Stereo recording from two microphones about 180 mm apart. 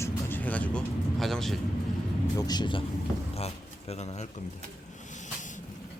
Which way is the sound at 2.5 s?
25° left (ahead or behind).